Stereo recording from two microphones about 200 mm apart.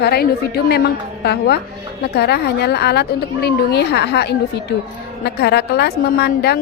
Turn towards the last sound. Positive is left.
turn(degrees=55)  # may be behind; listen again after turning